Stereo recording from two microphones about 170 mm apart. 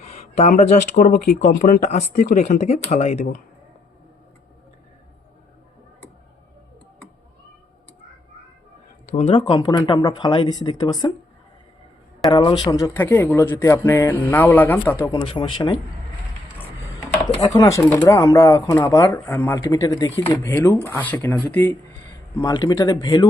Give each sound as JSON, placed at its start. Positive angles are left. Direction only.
{"t": 0.0, "sound": "a sound", "side_deg": 40}
{"t": 0.6, "sound": "speech", "side_deg": 50}
{"t": 2.2, "sound": "speech", "side_deg": 55}
{"t": 9.0, "sound": "speech", "side_deg": 45}
{"t": 12.3, "sound": "speech", "side_deg": 25}
{"t": 15.2, "sound": "speech", "side_deg": 30}
{"t": 17.4, "sound": "speech", "side_deg": 20}
{"t": 22.4, "sound": "speech", "side_deg": 25}